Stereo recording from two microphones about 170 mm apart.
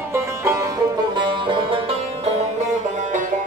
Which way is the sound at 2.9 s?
50° right (ahead or behind).